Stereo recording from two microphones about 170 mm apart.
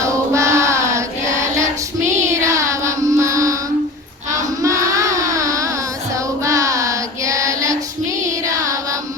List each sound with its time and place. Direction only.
0.0 s child singing: 15° right (ahead or behind)
2.2 s child singing: 15° right (ahead or behind)
8.4 s music: 20° right (ahead or behind)